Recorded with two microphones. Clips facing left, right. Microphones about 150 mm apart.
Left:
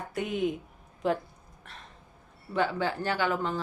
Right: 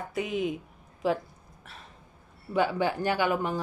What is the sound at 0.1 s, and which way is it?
Speech, centre (ahead or behind).